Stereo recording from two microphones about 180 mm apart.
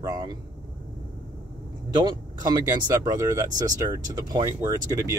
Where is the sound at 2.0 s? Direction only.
20° right (ahead or behind).